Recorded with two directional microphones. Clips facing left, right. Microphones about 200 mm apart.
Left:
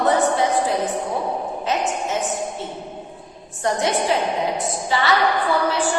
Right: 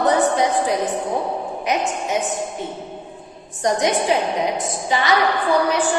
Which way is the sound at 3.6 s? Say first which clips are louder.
Right 2 dB; 15° right (ahead or behind).